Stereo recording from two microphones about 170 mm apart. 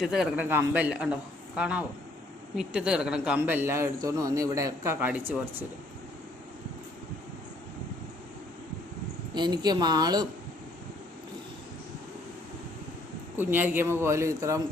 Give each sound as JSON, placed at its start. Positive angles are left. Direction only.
{"t": 0.0, "sound": "a man's voice", "side_deg": -5}
{"t": 9.3, "sound": "a woman's voice", "side_deg": -25}
{"t": 13.3, "sound": "a man's voice", "side_deg": -10}